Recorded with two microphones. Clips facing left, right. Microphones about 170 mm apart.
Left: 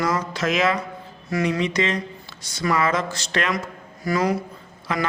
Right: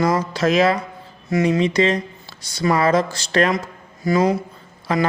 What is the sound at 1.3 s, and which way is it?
Speech, 25° right (ahead or behind).